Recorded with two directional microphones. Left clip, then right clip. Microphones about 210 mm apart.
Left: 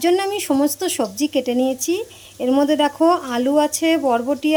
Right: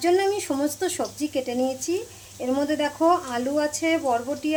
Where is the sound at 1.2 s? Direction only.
50° left (ahead or behind).